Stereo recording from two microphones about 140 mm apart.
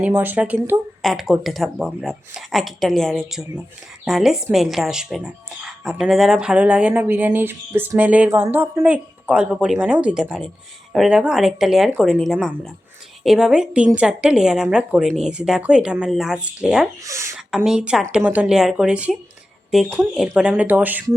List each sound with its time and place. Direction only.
0.0 s speech: 15° right (ahead or behind)
17.0 s speech: 20° right (ahead or behind)
17.3 s speech: 5° right (ahead or behind)